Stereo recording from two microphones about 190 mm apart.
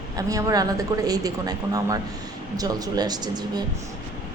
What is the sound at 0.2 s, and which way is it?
A woman's voice, 20° right (ahead or behind).